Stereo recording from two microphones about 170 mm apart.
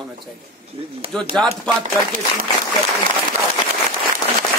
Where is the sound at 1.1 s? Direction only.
5° left (ahead or behind).